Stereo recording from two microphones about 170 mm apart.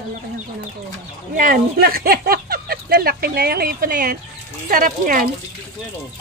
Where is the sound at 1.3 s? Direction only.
55° right (ahead or behind).